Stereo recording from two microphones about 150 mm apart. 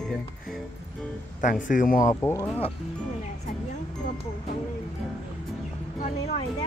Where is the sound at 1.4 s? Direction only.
60° left (ahead or behind).